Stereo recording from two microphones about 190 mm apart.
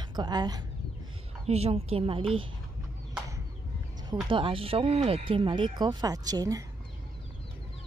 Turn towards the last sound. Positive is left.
turn(degrees=-20)  # may be behind; listen again after turning